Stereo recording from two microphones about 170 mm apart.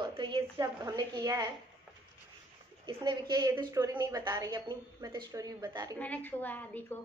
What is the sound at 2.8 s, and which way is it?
A woman's voice, 30° right (ahead or behind).